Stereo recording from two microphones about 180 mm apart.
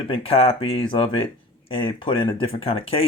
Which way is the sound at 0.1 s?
30° left (ahead or behind).